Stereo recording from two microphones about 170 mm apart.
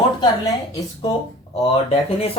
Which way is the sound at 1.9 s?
35° left (ahead or behind).